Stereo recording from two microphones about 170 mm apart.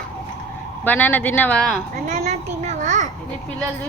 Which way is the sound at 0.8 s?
10° left (ahead or behind).